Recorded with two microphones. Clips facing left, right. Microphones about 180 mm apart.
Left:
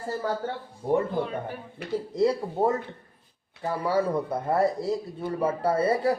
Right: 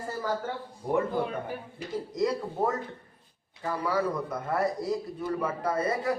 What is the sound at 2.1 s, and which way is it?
A man's voice, 30° left (ahead or behind).